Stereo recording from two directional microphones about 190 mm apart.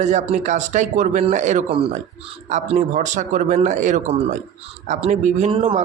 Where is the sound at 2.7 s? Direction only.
40° right (ahead or behind).